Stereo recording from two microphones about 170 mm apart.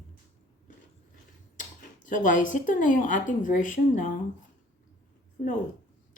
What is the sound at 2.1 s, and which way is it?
Speech, 50° left (ahead or behind).